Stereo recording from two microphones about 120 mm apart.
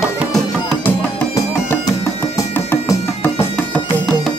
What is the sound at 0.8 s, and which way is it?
Music, 20° left (ahead or behind).